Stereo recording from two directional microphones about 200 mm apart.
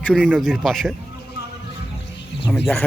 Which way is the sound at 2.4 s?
Centre (ahead or behind).